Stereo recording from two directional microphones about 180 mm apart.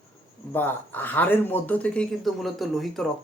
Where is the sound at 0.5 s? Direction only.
10° left (ahead or behind).